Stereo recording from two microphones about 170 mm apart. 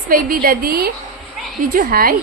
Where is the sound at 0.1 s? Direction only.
55° right (ahead or behind).